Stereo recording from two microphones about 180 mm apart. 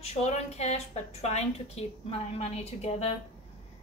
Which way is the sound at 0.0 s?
35° left (ahead or behind).